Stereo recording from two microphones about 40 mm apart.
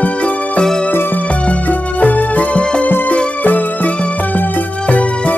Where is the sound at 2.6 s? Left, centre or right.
Left.